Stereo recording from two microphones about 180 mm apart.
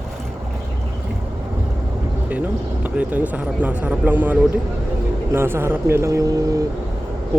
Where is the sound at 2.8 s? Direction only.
10° right (ahead or behind).